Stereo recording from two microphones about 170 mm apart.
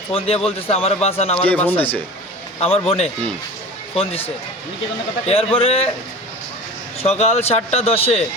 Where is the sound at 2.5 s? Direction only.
35° left (ahead or behind).